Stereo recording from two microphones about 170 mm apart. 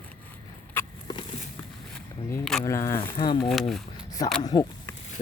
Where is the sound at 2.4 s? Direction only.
Centre (ahead or behind).